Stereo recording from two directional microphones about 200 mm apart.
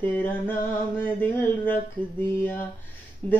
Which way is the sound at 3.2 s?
10° left (ahead or behind).